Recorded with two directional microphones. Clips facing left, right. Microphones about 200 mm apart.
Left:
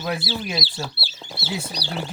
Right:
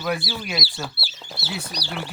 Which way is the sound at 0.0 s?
25° left (ahead or behind).